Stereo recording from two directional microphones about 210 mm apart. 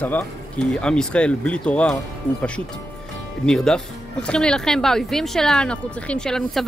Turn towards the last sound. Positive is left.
turn(degrees=5)  # may be behind; listen again after turning